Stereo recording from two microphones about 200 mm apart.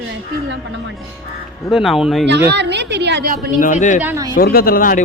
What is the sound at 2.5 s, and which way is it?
Speech, 60° right (ahead or behind).